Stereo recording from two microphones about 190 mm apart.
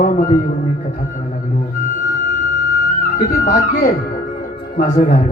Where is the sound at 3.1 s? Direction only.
45° left (ahead or behind).